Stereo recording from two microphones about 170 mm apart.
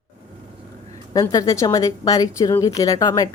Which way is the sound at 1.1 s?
20° left (ahead or behind).